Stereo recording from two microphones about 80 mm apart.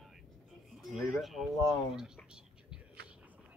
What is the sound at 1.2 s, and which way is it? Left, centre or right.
Speech, centre.